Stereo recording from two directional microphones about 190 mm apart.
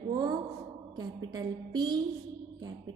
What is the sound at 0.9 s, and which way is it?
A woman's voice, 20° right (ahead or behind).